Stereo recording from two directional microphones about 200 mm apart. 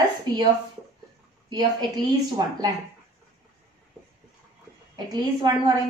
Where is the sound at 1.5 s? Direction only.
20° right (ahead or behind).